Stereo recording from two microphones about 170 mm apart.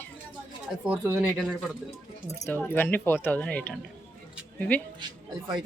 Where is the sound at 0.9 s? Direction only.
15° right (ahead or behind).